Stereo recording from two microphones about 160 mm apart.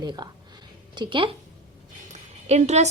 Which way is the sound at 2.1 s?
45° right (ahead or behind).